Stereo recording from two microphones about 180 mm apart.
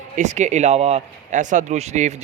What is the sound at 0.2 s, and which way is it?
A man's voice, 40° right (ahead or behind).